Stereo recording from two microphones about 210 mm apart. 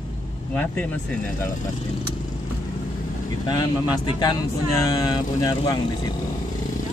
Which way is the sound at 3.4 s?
20° left (ahead or behind).